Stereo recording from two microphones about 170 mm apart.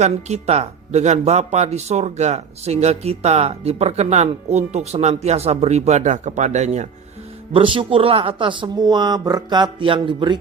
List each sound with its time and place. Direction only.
0.0 s speech: 40° right (ahead or behind)
7.5 s speech: 30° right (ahead or behind)